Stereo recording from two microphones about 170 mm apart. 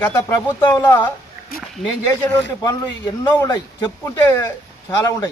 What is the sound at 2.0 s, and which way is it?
A man's voice, 20° left (ahead or behind).